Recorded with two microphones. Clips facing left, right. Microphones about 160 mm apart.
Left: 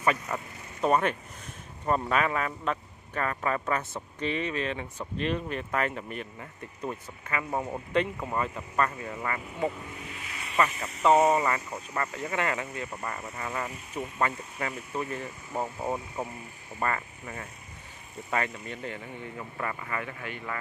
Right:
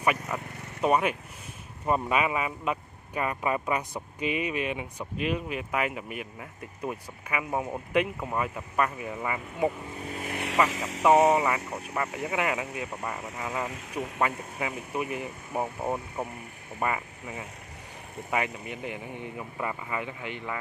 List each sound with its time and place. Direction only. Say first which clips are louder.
0.0 s speech: even; 10° right (ahead or behind)
9.9 s vehicle: right 8 dB; 40° right (ahead or behind)
10.7 s speech: right 5 dB; 90° right
11.0 s speech: right 1 dB; 5° right (ahead or behind)
16.8 s speech: right 1 dB; 10° right (ahead or behind)